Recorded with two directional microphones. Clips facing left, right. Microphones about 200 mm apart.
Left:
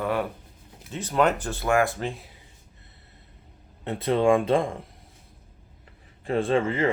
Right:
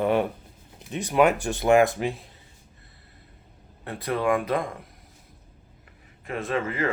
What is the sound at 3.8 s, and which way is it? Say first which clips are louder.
Speech: left 4 dB; 25° left (ahead or behind).